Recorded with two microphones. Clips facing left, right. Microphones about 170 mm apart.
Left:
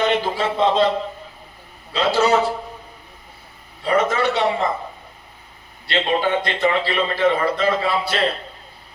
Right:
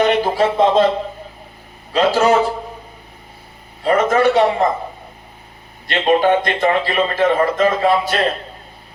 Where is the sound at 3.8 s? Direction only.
45° right (ahead or behind).